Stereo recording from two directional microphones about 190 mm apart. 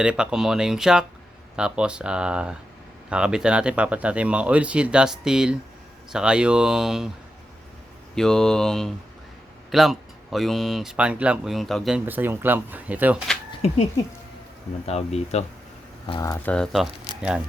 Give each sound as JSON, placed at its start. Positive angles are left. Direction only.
{"t": 0.0, "sound": "speech", "side_deg": -5}
{"t": 8.1, "sound": "speech", "side_deg": 5}
{"t": 14.8, "sound": "speech", "side_deg": 35}
{"t": 16.3, "sound": "speech", "side_deg": 10}